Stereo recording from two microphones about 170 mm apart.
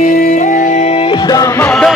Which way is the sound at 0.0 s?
50° left (ahead or behind).